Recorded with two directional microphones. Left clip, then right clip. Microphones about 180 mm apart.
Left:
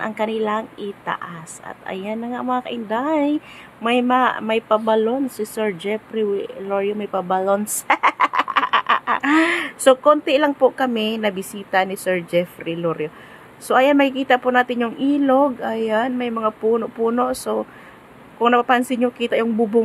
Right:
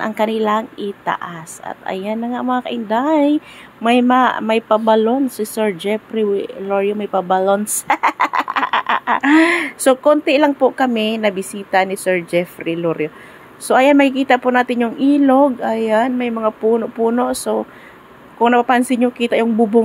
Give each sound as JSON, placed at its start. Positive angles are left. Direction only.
{"t": 0.0, "sound": "speech", "side_deg": -20}